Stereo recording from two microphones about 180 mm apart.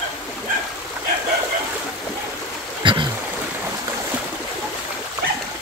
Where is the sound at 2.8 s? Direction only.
25° right (ahead or behind).